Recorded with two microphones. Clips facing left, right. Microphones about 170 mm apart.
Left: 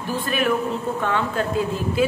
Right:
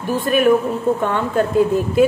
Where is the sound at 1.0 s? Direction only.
50° right (ahead or behind).